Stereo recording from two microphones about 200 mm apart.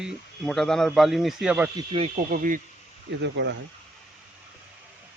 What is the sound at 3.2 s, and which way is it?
Speech, 60° right (ahead or behind).